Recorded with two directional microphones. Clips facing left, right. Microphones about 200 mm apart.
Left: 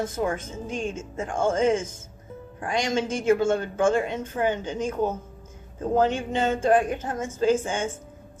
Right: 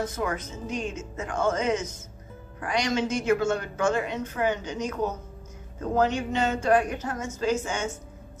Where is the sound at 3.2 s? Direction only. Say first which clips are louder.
Left 3 dB; 30° left (ahead or behind).